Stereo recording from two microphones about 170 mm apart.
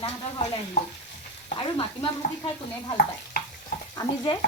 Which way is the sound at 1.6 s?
30° left (ahead or behind).